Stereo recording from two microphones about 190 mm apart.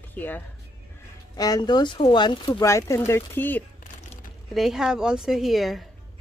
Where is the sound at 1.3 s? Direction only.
20° left (ahead or behind).